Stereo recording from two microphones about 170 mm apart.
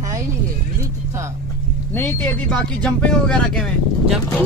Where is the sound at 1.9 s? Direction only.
10° left (ahead or behind).